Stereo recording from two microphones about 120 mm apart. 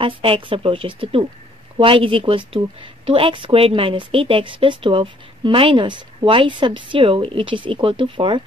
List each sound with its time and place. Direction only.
0.0 s speech: 50° right (ahead or behind)